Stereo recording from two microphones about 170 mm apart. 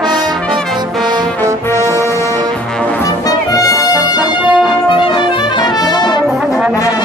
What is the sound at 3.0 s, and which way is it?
Brass instrument, 20° left (ahead or behind).